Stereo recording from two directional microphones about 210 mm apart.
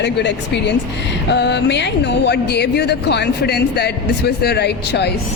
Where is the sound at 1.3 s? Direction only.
55° left (ahead or behind).